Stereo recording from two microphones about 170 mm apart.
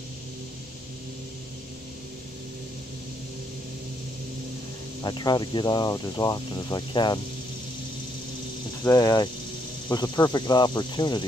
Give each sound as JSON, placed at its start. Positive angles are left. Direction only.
{"t": 5.0, "sound": "speech", "side_deg": 25}
{"t": 8.8, "sound": "speech", "side_deg": 20}